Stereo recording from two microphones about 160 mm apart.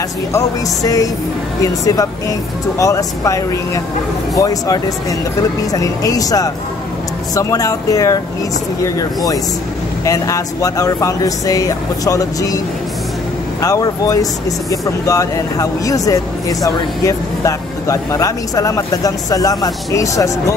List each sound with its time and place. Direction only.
0.8 s speech: 20° left (ahead or behind)